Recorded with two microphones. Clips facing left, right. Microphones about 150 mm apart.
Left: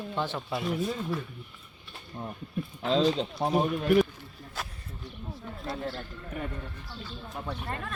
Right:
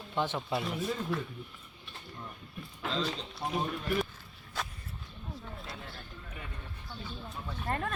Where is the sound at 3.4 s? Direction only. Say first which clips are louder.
Left 7 dB; 75° left (ahead or behind).